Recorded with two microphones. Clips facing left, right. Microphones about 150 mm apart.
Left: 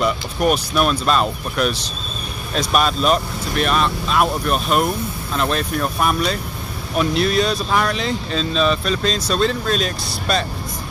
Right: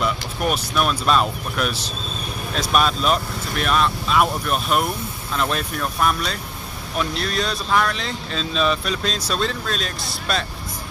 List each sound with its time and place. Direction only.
0.0 s speech: centre (ahead or behind)
5.8 s speech: 5° left (ahead or behind)